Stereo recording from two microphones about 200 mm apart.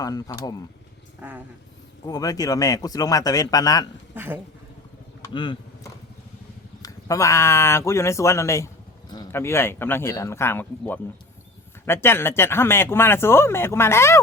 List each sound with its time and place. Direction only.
0.0 s speech: 20° left (ahead or behind)
1.2 s vehicle: 10° right (ahead or behind)
2.0 s speech: 20° left (ahead or behind)
4.1 s speech: 10° right (ahead or behind)
5.3 s speech: 25° left (ahead or behind)
6.8 s speech: 15° left (ahead or behind)